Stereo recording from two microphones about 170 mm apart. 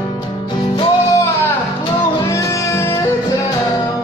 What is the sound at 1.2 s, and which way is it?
Music, 15° left (ahead or behind).